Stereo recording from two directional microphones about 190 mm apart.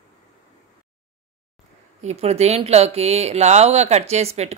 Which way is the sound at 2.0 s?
35° right (ahead or behind).